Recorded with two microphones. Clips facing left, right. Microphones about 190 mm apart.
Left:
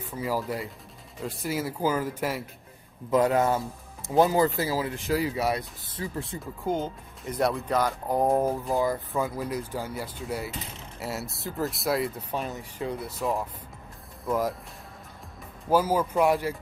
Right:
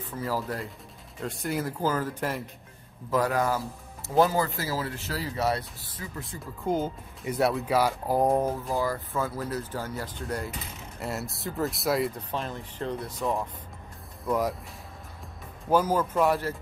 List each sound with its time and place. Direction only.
0.0 s speech: 10° left (ahead or behind)
3.1 s a man's voice: 20° left (ahead or behind)
6.6 s speech: centre (ahead or behind)
8.7 s speech: 15° left (ahead or behind); by 14.5 s centre (ahead or behind)
15.7 s speech: 10° left (ahead or behind)